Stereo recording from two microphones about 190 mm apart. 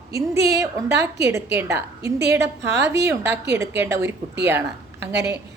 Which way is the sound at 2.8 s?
15° right (ahead or behind).